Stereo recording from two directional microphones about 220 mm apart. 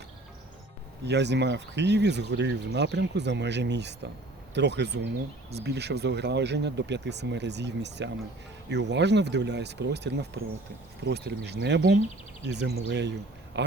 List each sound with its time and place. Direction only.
1.0 s speech: 50° right (ahead or behind)